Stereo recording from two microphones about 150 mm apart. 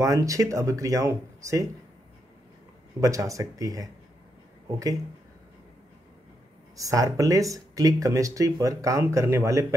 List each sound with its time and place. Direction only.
0.0 s speech: 20° right (ahead or behind)
3.0 s speech: 20° right (ahead or behind)
6.8 s speech: 20° right (ahead or behind)